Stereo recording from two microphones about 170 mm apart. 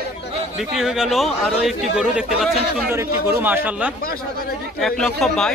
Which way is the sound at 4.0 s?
60° left (ahead or behind).